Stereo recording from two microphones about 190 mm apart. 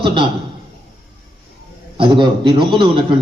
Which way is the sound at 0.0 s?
25° right (ahead or behind).